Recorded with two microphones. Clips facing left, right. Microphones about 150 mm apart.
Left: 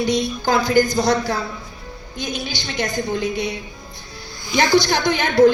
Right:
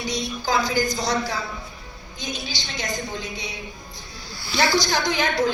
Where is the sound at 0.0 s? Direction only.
60° left (ahead or behind).